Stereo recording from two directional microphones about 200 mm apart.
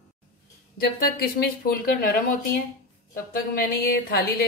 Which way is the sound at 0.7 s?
50° left (ahead or behind).